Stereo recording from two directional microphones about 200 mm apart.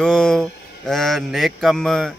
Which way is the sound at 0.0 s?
5° left (ahead or behind).